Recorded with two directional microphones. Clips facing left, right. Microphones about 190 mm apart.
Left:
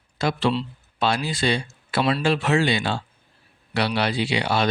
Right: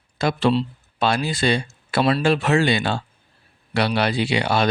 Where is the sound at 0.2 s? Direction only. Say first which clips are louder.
Right 3 dB; 50° right (ahead or behind).